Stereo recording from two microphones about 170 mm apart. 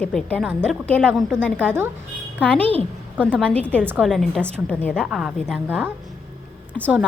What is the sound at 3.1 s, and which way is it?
Speech, 10° right (ahead or behind).